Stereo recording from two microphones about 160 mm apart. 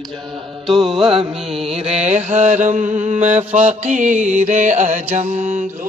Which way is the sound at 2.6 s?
50° right (ahead or behind).